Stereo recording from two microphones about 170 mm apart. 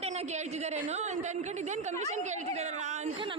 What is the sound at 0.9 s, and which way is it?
A woman's voice, 45° right (ahead or behind).